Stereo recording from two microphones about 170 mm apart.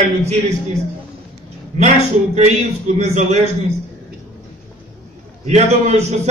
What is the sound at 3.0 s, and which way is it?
Speech, 40° right (ahead or behind).